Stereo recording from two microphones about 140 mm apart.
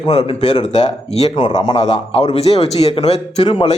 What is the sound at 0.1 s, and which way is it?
Speech, 45° left (ahead or behind).